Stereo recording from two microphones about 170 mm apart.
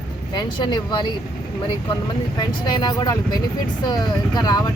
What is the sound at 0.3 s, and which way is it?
Speech, 25° left (ahead or behind).